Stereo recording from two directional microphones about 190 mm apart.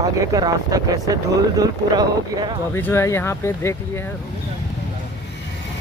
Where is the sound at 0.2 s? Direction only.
20° right (ahead or behind).